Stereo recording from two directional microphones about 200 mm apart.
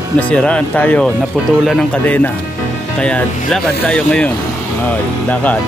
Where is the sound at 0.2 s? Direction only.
5° left (ahead or behind).